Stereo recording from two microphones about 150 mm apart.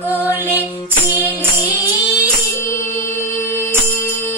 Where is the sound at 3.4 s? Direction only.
15° left (ahead or behind).